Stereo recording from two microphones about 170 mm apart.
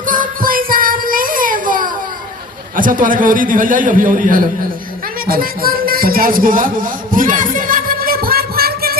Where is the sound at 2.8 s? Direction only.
55° right (ahead or behind).